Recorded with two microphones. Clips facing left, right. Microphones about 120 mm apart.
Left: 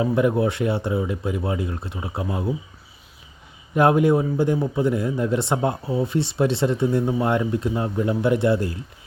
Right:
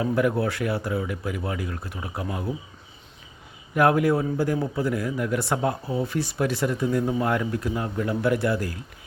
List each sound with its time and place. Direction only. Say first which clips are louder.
0.0 s speech: left 3 dB; 25° left (ahead or behind)
3.8 s speech: left 3 dB; 25° left (ahead or behind)